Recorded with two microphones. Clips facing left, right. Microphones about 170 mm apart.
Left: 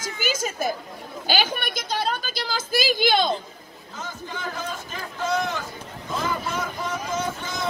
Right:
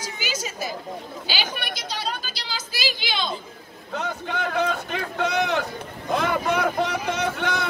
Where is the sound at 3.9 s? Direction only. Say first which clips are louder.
Right 6 dB; 65° right (ahead or behind).